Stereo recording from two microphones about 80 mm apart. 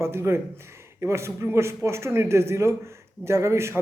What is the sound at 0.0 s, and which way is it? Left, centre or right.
A man's voice, right.